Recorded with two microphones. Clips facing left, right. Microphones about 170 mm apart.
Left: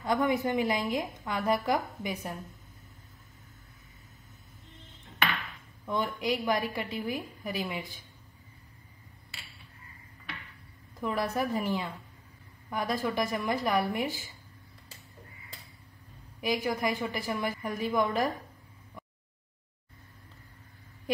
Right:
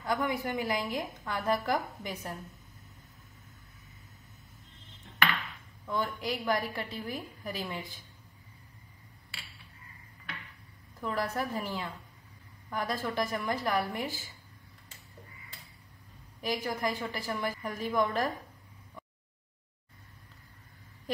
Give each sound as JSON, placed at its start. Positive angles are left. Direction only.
{"t": 0.0, "sound": "a woman's voice", "side_deg": 25}
{"t": 5.9, "sound": "a woman's voice", "side_deg": 15}
{"t": 11.0, "sound": "a woman's voice", "side_deg": 15}
{"t": 16.3, "sound": "a woman's voice", "side_deg": 10}